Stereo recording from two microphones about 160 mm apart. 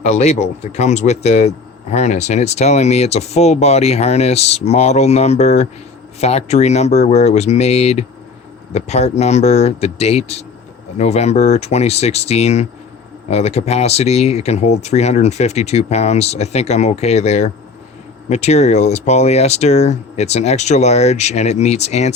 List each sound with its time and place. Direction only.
0.0 s speech: 45° left (ahead or behind)